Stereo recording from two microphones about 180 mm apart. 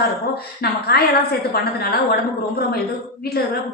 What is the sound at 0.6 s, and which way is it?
A woman's voice, 60° left (ahead or behind).